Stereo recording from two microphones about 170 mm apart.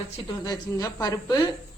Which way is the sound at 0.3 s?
20° left (ahead or behind).